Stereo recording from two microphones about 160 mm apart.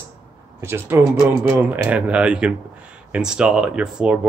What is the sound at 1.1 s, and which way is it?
Speech, 25° left (ahead or behind).